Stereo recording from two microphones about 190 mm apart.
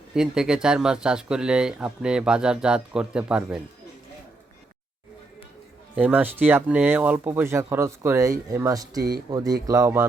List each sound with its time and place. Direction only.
0.1 s speech: 5° right (ahead or behind)
6.0 s speech: 10° right (ahead or behind)